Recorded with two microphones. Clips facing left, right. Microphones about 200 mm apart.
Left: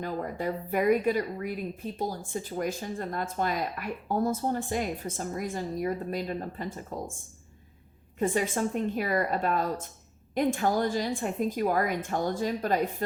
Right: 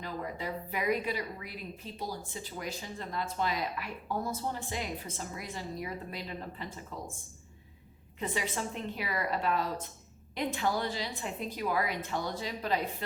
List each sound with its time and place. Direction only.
0.0 s speech: 50° left (ahead or behind)
8.2 s speech: 50° left (ahead or behind)